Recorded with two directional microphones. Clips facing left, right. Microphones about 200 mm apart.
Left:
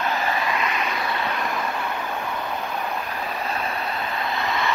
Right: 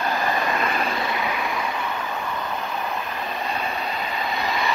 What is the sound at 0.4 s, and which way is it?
Vehicle, 45° right (ahead or behind).